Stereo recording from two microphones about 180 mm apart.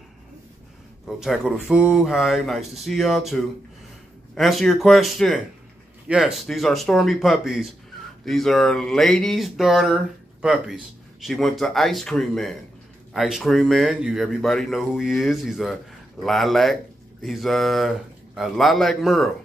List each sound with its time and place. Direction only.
1.0 s speech: centre (ahead or behind)
4.4 s speech: centre (ahead or behind)